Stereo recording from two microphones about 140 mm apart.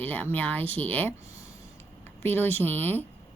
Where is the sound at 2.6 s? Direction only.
15° left (ahead or behind).